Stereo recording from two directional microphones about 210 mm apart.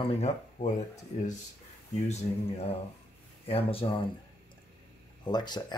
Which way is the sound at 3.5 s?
25° left (ahead or behind).